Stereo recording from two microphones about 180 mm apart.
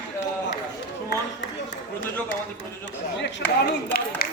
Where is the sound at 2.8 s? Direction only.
80° left.